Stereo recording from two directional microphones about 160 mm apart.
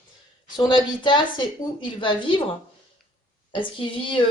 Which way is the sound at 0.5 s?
30° left (ahead or behind).